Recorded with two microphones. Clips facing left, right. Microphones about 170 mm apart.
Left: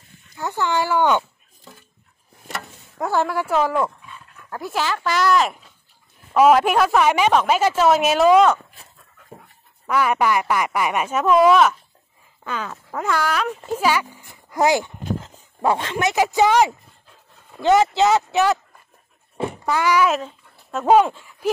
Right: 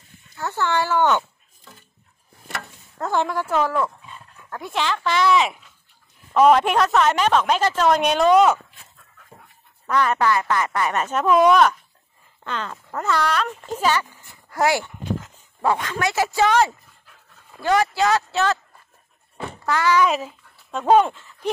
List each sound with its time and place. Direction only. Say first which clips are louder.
0.3 s speech: left 1 dB; 15° left (ahead or behind)
3.0 s speech: left 2 dB; 5° left (ahead or behind)
4.5 s speech: left 1 dB; 5° left (ahead or behind)
9.8 s speech: left 1 dB; 10° left (ahead or behind)
19.3 s dog: left 5 dB; 30° left (ahead or behind)
19.7 s speech: even; 15° left (ahead or behind)
20.1 s a sound: left 1 dB; centre (ahead or behind)
20.8 s speech: left 1 dB; 5° left (ahead or behind)